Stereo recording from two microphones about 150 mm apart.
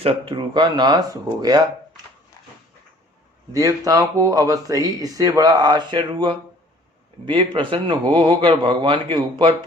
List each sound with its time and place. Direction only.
0.0 s speech: 35° right (ahead or behind)
3.5 s speech: 25° right (ahead or behind)